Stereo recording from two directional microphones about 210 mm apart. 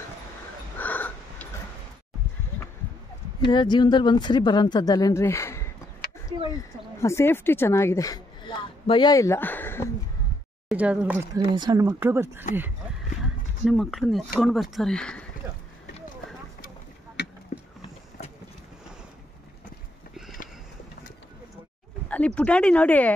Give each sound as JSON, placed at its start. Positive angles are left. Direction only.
{"t": 0.7, "sound": "a sound", "side_deg": 10}
{"t": 3.4, "sound": "speech", "side_deg": 20}
{"t": 6.0, "sound": "a sound", "side_deg": 45}
{"t": 6.5, "sound": "speech", "side_deg": 15}
{"t": 10.7, "sound": "speech", "side_deg": -5}
{"t": 11.5, "sound": "speech", "side_deg": -20}
{"t": 13.2, "sound": "speech", "side_deg": 0}
{"t": 17.2, "sound": "a sound", "side_deg": 50}
{"t": 22.1, "sound": "speech", "side_deg": 5}